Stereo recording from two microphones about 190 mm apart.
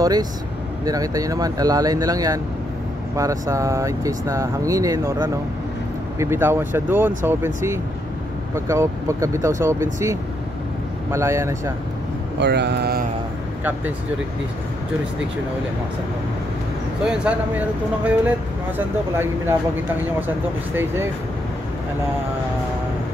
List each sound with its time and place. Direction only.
0.0 s speech: 20° right (ahead or behind)
12.4 s speech: 65° right (ahead or behind)
17.0 s speech: 5° right (ahead or behind)
20.7 s speech: 10° right (ahead or behind)